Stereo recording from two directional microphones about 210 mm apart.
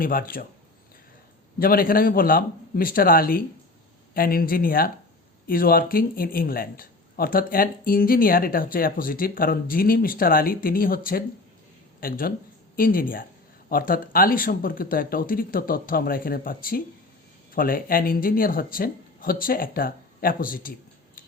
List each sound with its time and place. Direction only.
0.0 s speech: 45° left (ahead or behind)
1.5 s speech: 45° left (ahead or behind)